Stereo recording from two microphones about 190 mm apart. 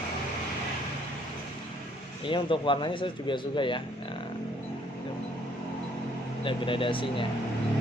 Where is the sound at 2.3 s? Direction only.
25° left (ahead or behind).